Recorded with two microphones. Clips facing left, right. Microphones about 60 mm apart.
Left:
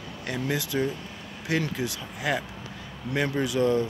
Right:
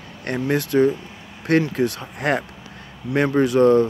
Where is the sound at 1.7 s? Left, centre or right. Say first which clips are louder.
Right 9 dB; right.